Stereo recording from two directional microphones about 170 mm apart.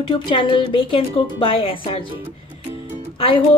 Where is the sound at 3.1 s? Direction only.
30° left (ahead or behind).